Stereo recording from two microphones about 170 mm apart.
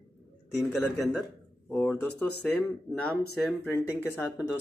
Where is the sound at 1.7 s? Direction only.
10° left (ahead or behind).